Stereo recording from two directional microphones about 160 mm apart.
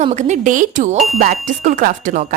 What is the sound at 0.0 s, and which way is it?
A woman's voice, 45° right (ahead or behind).